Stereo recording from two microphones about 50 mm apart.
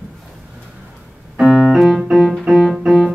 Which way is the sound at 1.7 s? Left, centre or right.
Centre.